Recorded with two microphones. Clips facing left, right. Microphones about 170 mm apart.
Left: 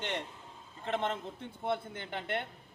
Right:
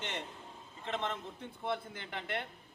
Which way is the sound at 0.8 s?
50° left (ahead or behind).